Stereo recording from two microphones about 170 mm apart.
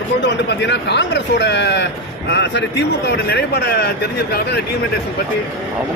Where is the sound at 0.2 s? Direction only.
90° left; by 4.6 s 70° left (ahead or behind).